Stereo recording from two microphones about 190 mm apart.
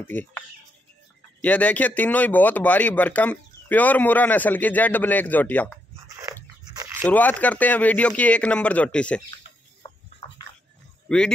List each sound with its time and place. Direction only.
0.0 s speech: 10° left (ahead or behind)
1.4 s speech: 10° left (ahead or behind)
6.1 s dog: 15° right (ahead or behind)
7.1 s speech: 10° left (ahead or behind)
9.8 s chicken: 30° left (ahead or behind)
11.1 s speech: 5° left (ahead or behind)